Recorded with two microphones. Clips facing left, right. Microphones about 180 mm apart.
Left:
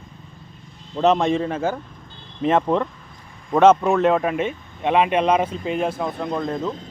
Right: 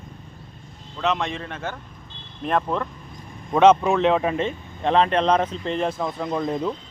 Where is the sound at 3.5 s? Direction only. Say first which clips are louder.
Left 1 dB; 5° left (ahead or behind).